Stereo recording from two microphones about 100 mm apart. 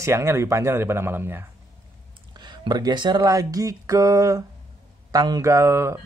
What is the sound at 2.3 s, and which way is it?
Speech, 50° right (ahead or behind).